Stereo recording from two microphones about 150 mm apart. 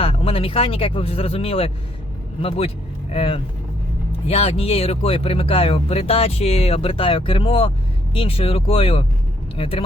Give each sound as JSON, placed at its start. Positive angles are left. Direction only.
{"t": 0.0, "sound": "speech", "side_deg": 40}